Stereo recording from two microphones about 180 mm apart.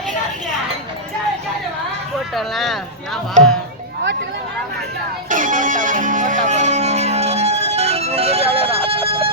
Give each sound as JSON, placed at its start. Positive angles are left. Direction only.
{"t": 2.3, "sound": "speech", "side_deg": 0}
{"t": 3.4, "sound": "speech", "side_deg": -45}
{"t": 5.3, "sound": "music", "side_deg": -45}